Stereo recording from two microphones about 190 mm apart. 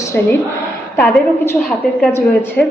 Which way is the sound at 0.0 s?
15° left (ahead or behind).